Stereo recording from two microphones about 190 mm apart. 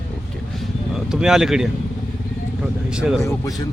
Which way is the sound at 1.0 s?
5° right (ahead or behind).